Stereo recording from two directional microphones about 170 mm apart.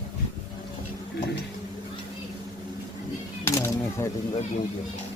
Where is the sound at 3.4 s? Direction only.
15° left (ahead or behind).